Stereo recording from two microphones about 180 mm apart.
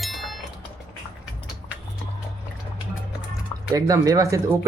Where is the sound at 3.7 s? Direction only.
20° right (ahead or behind).